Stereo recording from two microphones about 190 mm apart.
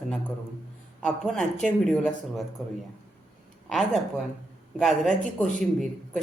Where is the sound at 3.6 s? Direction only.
Centre (ahead or behind).